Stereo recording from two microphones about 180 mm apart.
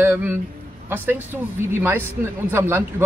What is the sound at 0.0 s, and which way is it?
A man's voice, 10° right (ahead or behind).